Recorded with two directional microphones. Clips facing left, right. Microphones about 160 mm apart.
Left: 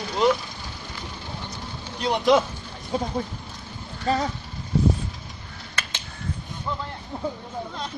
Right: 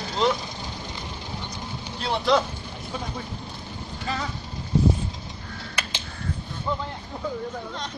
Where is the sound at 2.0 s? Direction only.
15° left (ahead or behind).